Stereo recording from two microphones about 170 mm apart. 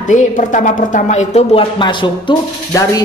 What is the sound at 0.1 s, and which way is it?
Speech, 45° left (ahead or behind).